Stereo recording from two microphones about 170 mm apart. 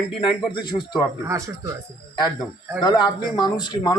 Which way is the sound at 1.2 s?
20° right (ahead or behind).